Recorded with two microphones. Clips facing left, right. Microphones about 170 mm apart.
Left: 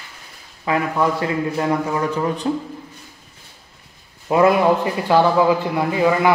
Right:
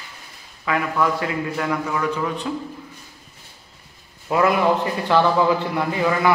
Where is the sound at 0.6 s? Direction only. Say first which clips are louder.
Left 2 dB; 25° left (ahead or behind).